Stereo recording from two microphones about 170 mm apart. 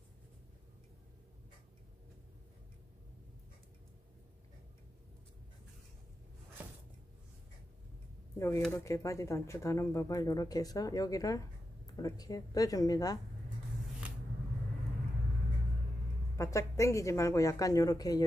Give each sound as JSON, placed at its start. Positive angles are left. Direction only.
{"t": 8.4, "sound": "speech", "side_deg": 15}
{"t": 16.3, "sound": "speech", "side_deg": 20}